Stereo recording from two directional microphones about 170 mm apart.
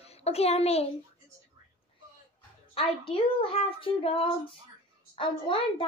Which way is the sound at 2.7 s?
35° left (ahead or behind).